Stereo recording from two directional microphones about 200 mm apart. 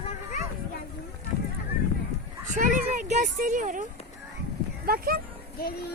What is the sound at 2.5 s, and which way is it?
Speech, 40° right (ahead or behind).